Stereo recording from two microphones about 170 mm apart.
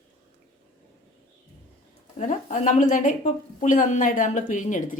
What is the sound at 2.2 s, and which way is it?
A woman's voice, 45° left (ahead or behind).